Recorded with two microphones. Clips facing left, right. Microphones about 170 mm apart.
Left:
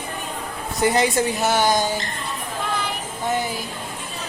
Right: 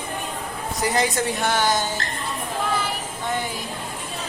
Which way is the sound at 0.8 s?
25° left (ahead or behind).